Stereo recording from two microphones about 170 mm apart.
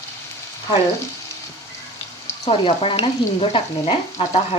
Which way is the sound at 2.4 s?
35° left (ahead or behind).